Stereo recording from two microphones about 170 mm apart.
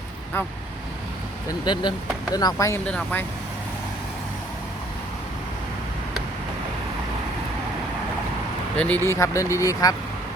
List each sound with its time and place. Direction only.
1.5 s speech: 25° left (ahead or behind); by 3.2 s 10° left (ahead or behind)
8.8 s speech: 10° left (ahead or behind)